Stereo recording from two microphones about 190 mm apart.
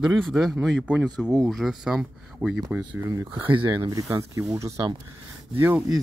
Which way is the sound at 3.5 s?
25° right (ahead or behind).